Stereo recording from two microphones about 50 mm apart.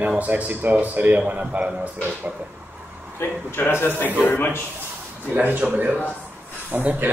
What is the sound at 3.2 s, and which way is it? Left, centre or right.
A man's voice, left.